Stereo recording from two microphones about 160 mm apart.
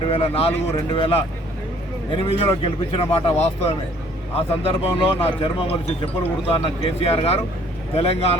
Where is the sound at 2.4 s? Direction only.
35° left (ahead or behind).